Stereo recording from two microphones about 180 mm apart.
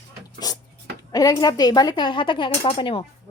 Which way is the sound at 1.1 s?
20° left (ahead or behind).